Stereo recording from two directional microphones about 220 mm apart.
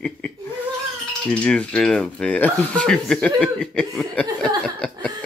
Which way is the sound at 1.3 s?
5° left (ahead or behind).